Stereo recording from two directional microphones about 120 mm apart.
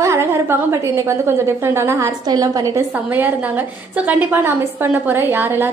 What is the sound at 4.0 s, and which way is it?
A woman's voice, 15° right (ahead or behind).